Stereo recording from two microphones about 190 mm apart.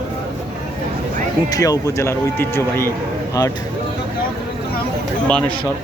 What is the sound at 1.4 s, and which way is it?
A man's voice, 20° left (ahead or behind).